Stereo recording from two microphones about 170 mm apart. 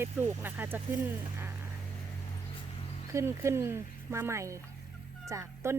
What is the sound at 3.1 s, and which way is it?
Speech, 15° right (ahead or behind).